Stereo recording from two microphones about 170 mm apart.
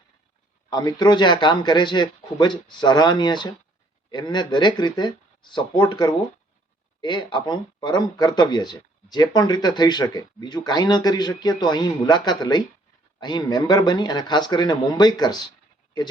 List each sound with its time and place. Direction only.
0.7 s speech: 20° left (ahead or behind)